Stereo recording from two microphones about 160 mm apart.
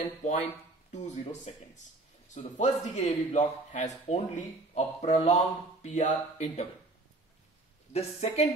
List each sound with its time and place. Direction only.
0.2 s a man's voice: 45° left (ahead or behind)
7.9 s a woman's voice: 40° left (ahead or behind)